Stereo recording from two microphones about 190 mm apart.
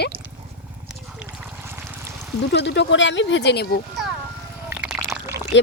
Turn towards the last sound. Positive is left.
turn(degrees=-15)  # may be behind; listen again after turning